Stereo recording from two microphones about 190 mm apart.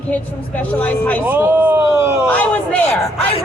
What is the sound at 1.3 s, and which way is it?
Speech, 10° right (ahead or behind).